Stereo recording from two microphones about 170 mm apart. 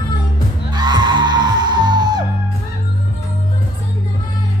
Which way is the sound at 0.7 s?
25° right (ahead or behind).